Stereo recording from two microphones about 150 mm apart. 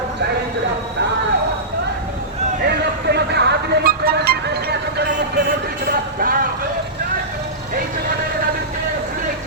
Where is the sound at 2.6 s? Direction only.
90° right; by 6.5 s 75° right (ahead or behind).